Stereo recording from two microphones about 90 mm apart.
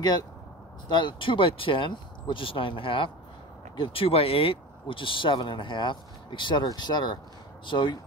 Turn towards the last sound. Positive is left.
turn(degrees=65)  # may be behind; listen again after turning